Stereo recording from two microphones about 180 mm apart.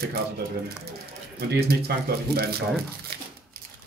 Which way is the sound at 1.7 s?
60° right (ahead or behind).